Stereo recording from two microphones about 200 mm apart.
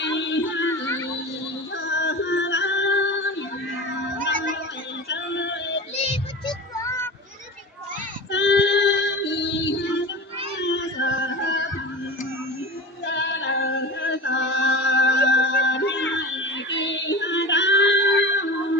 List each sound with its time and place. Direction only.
0.0 s a sound: 65° left (ahead or behind)
0.9 s a sound: 15° left (ahead or behind)
1.7 s music: 65° left (ahead or behind)
5.0 s music: 65° left (ahead or behind)
6.0 s child singing: 25° left (ahead or behind)
8.3 s female singing: 60° left (ahead or behind)
10.6 s music: 65° left (ahead or behind)
13.1 s singing: 65° left (ahead or behind)